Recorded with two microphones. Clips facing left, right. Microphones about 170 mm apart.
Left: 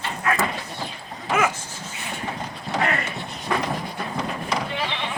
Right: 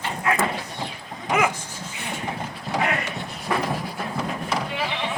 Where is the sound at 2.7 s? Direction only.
10° right (ahead or behind).